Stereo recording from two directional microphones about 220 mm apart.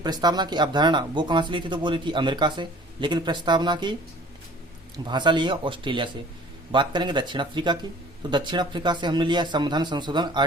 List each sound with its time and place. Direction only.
0.0 s speech: 20° right (ahead or behind)
5.0 s speech: 20° right (ahead or behind)